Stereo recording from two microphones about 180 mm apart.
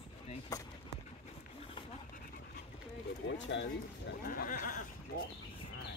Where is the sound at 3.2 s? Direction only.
90° left.